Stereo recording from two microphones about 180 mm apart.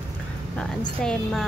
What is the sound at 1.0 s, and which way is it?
Speech, centre (ahead or behind).